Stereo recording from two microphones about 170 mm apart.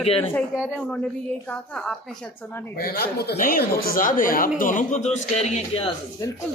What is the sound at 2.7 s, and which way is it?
Speech, 60° left (ahead or behind).